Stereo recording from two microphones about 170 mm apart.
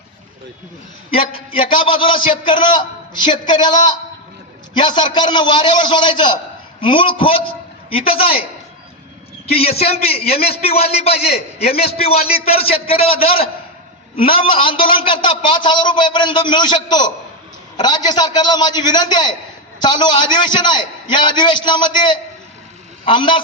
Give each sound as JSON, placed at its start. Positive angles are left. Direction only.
{"t": 1.3, "sound": "a man's voice", "side_deg": 30}
{"t": 9.5, "sound": "a man's voice", "side_deg": 35}